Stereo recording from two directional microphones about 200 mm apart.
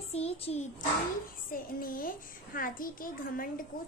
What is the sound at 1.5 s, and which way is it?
A child's voice, 45° left (ahead or behind).